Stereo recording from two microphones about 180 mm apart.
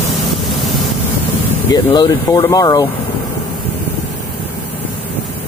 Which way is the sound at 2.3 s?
10° left (ahead or behind).